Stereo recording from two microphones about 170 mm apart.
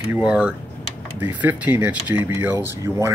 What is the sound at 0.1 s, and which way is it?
Speech, 5° right (ahead or behind).